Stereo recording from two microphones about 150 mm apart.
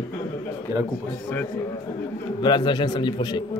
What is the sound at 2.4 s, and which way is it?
A man's voice, 30° left (ahead or behind).